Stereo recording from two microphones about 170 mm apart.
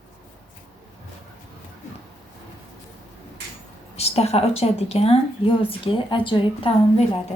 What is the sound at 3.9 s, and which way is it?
A woman's voice, 35° left (ahead or behind).